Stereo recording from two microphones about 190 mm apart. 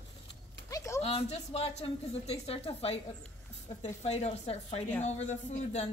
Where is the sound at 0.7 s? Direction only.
15° left (ahead or behind).